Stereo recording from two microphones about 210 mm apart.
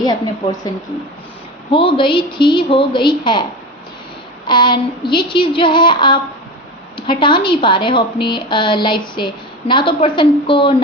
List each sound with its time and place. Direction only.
0.0 s a woman's voice: 20° left (ahead or behind)
1.7 s a woman's voice: 25° left (ahead or behind)
4.4 s a woman's voice: 20° left (ahead or behind)